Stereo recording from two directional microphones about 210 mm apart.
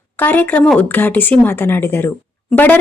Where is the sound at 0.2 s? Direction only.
10° left (ahead or behind).